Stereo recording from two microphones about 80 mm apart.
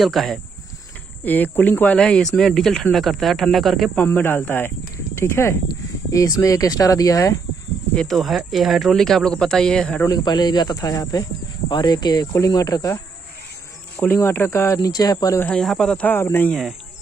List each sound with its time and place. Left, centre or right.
0.0 s speech: centre
1.2 s speech: left; by 3.9 s centre
3.9 s speech: left
6.1 s speech: left
7.9 s speech: centre
10.2 s speech: left
13.9 s speech: left
14.9 s speech: left
15.6 s speech: centre
16.1 s speech: left